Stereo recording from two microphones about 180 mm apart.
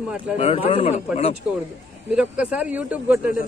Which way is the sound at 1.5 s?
5° right (ahead or behind).